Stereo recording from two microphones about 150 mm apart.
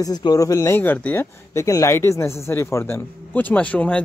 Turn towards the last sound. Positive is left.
turn(degrees=10)  # may be behind; listen again after turning